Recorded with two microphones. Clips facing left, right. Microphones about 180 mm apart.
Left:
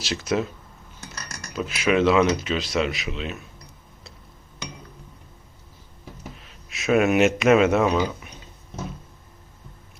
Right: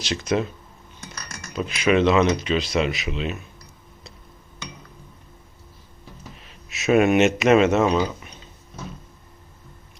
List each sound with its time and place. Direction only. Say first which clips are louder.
0.0 s speech: right 1 dB; 5° left (ahead or behind)
1.3 s typing: even; 25° right (ahead or behind)
1.5 s speech: right 2 dB; 5° left (ahead or behind)
6.3 s speech: even; centre (ahead or behind)
8.0 s a sound: even; 5° left (ahead or behind)